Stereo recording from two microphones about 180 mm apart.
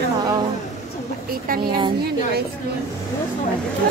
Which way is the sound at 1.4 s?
55° right (ahead or behind).